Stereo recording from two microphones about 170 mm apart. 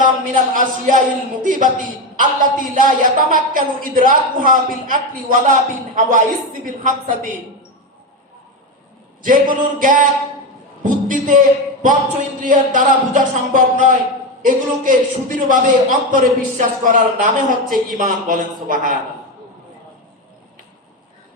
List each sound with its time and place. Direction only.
0.0 s a woman's voice: 50° right (ahead or behind)
2.1 s a woman's voice: 50° right (ahead or behind)
9.2 s a woman's voice: 55° right (ahead or behind)
10.8 s a sound: 50° right (ahead or behind)
12.4 s a woman's voice: 50° right (ahead or behind)